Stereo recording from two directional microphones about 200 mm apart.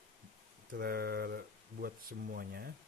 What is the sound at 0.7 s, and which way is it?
Speech, 50° right (ahead or behind).